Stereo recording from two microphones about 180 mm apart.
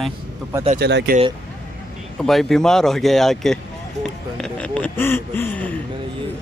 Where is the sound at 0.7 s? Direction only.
65° right (ahead or behind).